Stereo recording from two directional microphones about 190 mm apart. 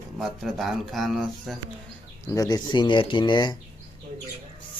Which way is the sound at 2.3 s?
20° left (ahead or behind).